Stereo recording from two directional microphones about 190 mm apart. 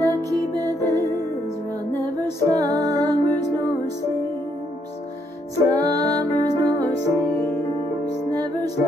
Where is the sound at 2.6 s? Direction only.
20° right (ahead or behind).